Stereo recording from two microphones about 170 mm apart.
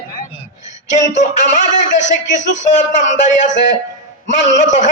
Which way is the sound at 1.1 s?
45° left (ahead or behind).